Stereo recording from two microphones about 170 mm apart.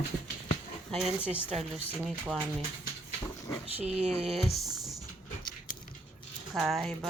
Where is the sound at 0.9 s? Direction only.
Centre (ahead or behind).